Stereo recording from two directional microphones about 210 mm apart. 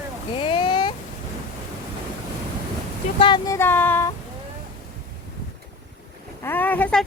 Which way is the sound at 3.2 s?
20° left (ahead or behind).